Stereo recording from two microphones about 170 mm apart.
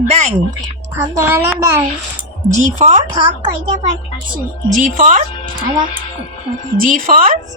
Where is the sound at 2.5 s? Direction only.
40° right (ahead or behind).